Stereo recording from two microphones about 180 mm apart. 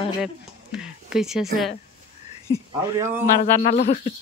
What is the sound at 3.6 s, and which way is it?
Speech, 45° left (ahead or behind).